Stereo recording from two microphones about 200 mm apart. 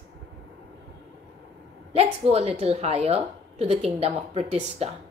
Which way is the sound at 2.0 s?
30° right (ahead or behind).